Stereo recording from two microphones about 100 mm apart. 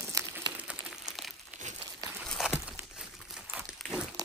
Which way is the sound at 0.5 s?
10° right (ahead or behind).